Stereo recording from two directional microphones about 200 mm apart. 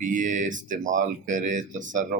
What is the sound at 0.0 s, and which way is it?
Speech, 40° right (ahead or behind).